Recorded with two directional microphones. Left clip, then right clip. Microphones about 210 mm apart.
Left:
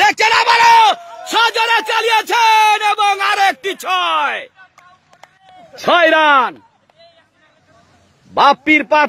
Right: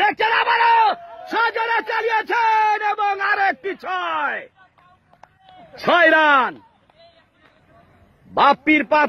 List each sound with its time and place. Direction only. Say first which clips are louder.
0.0 s a sound: left 6 dB; 15° left (ahead or behind)
5.8 s a man's voice: left 3 dB; 20° left (ahead or behind)
8.4 s a man's voice: left 4 dB; 20° left (ahead or behind)